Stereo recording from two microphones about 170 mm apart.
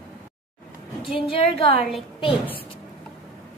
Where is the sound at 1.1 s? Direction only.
35° left (ahead or behind).